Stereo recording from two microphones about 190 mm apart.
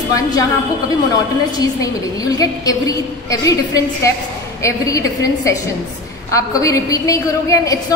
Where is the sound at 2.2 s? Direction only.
20° left (ahead or behind).